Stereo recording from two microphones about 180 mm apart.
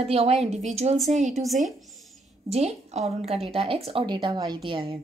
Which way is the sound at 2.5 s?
35° right (ahead or behind).